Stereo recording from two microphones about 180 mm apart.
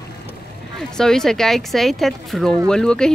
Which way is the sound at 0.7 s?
5° left (ahead or behind).